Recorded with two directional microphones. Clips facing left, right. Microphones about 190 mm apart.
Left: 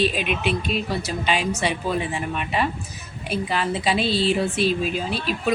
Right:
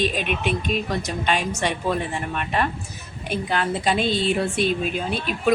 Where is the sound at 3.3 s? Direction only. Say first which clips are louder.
Even; centre (ahead or behind).